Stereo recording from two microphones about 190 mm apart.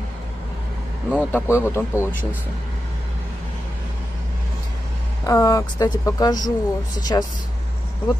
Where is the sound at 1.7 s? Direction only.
15° left (ahead or behind).